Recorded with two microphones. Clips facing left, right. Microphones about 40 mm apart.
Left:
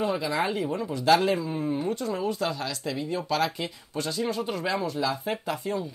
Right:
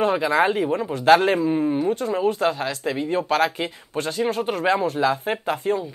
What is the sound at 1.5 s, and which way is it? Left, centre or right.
Speech, right.